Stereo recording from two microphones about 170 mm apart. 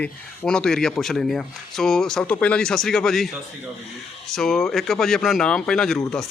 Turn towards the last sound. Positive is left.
turn(degrees=5)  # may be behind; listen again after turning